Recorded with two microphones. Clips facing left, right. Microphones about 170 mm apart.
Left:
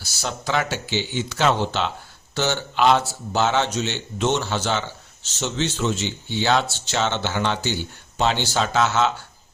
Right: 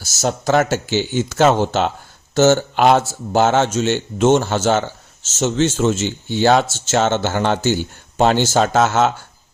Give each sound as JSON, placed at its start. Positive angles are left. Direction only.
{"t": 0.0, "sound": "speech", "side_deg": -45}